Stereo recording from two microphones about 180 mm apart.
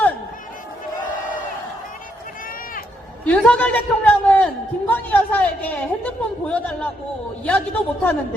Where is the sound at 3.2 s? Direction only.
5° left (ahead or behind).